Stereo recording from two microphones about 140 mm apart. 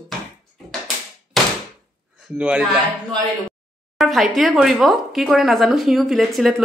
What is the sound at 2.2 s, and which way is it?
Speech, 5° right (ahead or behind).